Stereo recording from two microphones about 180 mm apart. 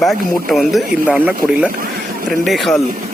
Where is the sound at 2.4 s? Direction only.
Centre (ahead or behind).